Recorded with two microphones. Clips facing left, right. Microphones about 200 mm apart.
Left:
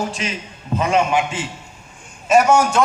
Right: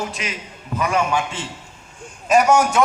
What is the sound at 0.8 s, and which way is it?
Speech, 25° left (ahead or behind).